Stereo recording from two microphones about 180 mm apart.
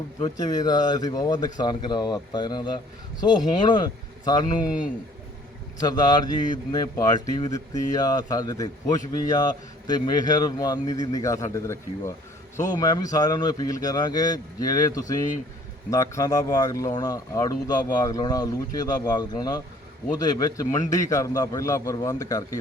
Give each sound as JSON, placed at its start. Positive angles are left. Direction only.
{"t": 0.2, "sound": "speech", "side_deg": 20}
{"t": 5.8, "sound": "speech", "side_deg": 25}